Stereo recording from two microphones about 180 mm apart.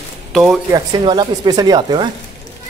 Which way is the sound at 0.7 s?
20° right (ahead or behind).